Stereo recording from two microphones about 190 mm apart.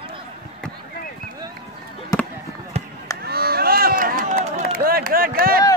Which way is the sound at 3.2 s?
55° right (ahead or behind).